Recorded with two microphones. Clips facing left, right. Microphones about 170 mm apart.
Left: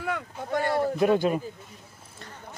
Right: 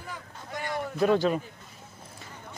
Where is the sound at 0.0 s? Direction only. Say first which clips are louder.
Left 10 dB; 70° left (ahead or behind).